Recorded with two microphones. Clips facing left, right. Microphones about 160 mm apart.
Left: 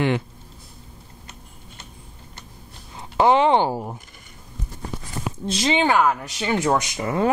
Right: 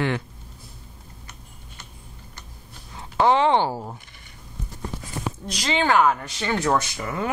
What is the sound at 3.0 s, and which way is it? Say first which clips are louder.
Speech: left 2 dB; 15° left (ahead or behind).